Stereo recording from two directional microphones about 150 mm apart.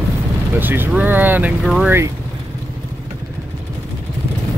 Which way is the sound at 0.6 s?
15° right (ahead or behind).